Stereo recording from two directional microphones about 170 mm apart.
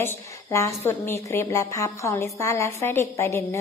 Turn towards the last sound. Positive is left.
turn(degrees=15)  # may be behind; listen again after turning